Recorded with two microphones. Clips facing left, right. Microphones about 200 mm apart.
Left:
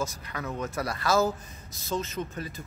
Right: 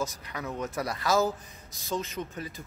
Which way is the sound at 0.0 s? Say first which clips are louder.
Left 1 dB; 15° right (ahead or behind).